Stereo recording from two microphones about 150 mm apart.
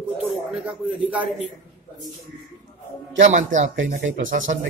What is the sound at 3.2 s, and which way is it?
Speech, 55° right (ahead or behind).